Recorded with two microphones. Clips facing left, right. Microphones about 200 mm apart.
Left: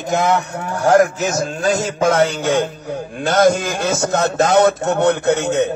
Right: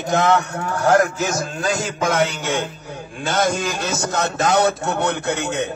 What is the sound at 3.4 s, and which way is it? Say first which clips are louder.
A man's voice: left 7 dB; 55° left (ahead or behind).